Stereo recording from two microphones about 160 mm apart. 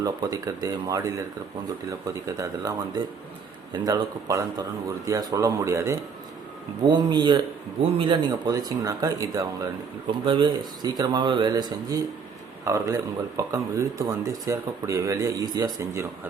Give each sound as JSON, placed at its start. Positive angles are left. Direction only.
{"t": 0.0, "sound": "speech", "side_deg": -20}